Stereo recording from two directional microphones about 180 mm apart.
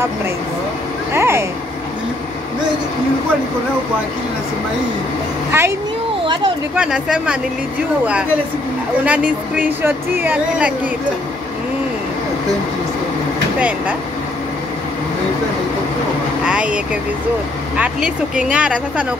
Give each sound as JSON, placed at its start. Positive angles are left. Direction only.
{"t": 1.1, "sound": "vehicle", "side_deg": -15}
{"t": 5.5, "sound": "speech", "side_deg": -15}
{"t": 6.2, "sound": "speech", "side_deg": -25}
{"t": 6.7, "sound": "speech", "side_deg": -5}
{"t": 9.0, "sound": "speech", "side_deg": -5}
{"t": 13.6, "sound": "speech", "side_deg": -5}
{"t": 16.4, "sound": "speech", "side_deg": -5}